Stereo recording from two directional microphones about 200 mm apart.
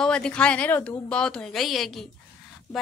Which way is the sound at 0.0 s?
5° left (ahead or behind).